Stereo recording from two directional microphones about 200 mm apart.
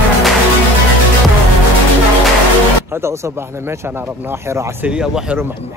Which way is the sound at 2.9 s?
15° right (ahead or behind).